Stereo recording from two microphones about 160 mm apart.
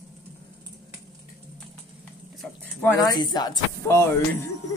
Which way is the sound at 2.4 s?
10° left (ahead or behind).